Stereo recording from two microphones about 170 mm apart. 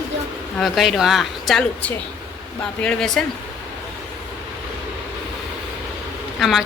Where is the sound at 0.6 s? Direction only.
Centre (ahead or behind).